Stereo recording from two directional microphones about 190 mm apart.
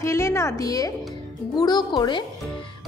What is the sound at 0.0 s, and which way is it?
A woman's voice, 15° left (ahead or behind).